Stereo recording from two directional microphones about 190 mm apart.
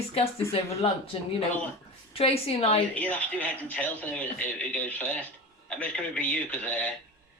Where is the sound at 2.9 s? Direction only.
10° left (ahead or behind).